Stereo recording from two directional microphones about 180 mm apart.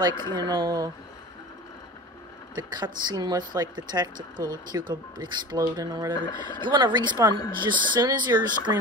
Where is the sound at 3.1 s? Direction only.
25° right (ahead or behind).